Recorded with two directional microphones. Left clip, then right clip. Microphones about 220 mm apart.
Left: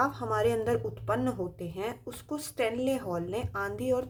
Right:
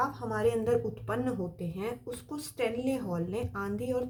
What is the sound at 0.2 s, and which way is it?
A woman's voice, 25° left (ahead or behind).